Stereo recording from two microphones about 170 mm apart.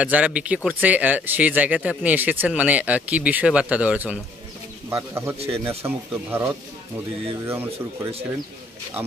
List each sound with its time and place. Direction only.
0.0 s speech: 5° right (ahead or behind)
5.4 s speech: 35° right (ahead or behind)
5.9 s speech: 15° right (ahead or behind)